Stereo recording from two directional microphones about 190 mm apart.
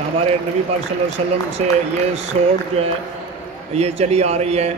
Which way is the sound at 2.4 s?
35° right (ahead or behind).